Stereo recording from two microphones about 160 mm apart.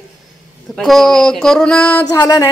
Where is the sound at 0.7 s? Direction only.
Centre (ahead or behind).